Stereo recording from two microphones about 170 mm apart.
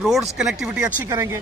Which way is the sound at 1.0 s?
15° right (ahead or behind).